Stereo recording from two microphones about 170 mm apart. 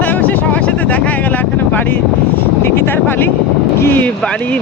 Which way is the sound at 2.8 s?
10° left (ahead or behind).